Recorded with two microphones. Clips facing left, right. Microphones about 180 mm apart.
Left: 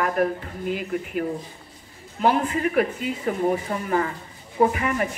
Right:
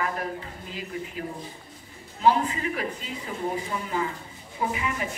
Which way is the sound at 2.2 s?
60° left (ahead or behind).